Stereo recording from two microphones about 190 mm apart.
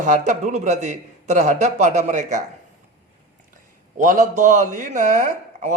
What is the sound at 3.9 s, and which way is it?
A man's voice, 45° right (ahead or behind).